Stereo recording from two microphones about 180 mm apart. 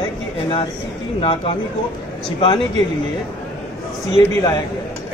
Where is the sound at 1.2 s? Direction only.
30° left (ahead or behind).